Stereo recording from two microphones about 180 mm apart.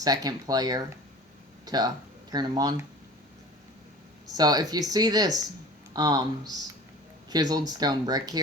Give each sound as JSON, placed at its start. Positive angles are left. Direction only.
{"t": 0.0, "sound": "speech", "side_deg": -20}
{"t": 4.4, "sound": "speech", "side_deg": -20}